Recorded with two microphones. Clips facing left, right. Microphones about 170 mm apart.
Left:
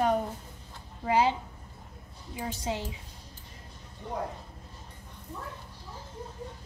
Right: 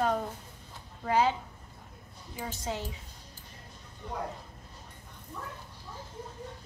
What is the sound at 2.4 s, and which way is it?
Speech, 10° left (ahead or behind).